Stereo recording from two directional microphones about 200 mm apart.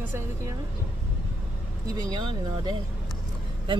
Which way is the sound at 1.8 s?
20° right (ahead or behind).